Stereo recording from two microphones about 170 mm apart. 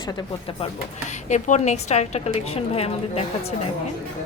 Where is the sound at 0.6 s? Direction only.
45° left (ahead or behind).